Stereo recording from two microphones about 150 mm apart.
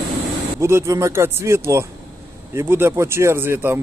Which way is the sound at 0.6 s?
20° right (ahead or behind).